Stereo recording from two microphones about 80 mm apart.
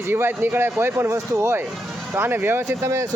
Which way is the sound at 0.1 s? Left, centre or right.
Right.